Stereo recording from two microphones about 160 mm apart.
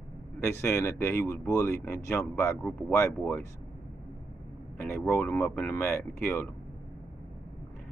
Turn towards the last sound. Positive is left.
turn(degrees=15)  # may be behind; listen again after turning